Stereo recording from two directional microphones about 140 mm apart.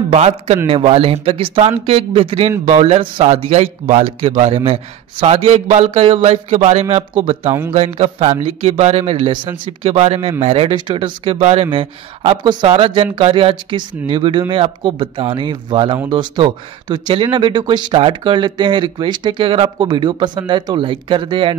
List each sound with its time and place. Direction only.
0.1 s a man's voice: 50° right (ahead or behind)
5.9 s a man's voice: 45° right (ahead or behind)
9.8 s a man's voice: 50° right (ahead or behind)
11.3 s speech: 50° right (ahead or behind)